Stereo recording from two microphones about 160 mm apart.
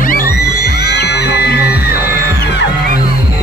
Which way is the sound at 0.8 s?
90° left.